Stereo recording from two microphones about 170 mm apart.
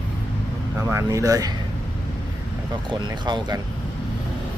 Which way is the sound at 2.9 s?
25° right (ahead or behind).